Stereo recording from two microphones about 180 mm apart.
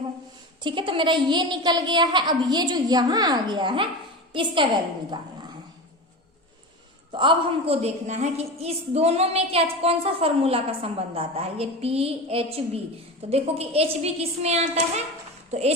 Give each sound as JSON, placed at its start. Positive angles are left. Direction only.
{"t": 0.6, "sound": "a woman's voice", "side_deg": -30}
{"t": 7.1, "sound": "a woman's voice", "side_deg": -30}